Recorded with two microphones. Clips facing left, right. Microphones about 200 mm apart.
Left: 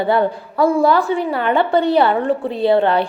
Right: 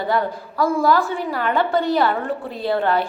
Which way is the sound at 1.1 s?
65° left (ahead or behind).